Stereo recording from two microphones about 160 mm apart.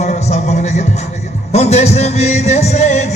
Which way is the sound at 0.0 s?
45° left (ahead or behind).